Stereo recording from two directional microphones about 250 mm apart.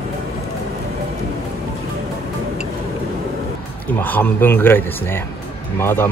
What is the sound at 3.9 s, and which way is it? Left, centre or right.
A man's voice, centre.